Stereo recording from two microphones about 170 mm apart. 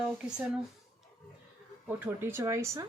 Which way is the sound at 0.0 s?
5° right (ahead or behind).